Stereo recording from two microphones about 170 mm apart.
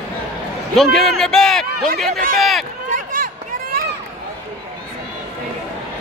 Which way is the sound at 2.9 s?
55° right (ahead or behind).